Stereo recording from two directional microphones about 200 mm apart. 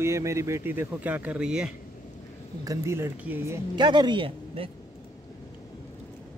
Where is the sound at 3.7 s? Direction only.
20° right (ahead or behind).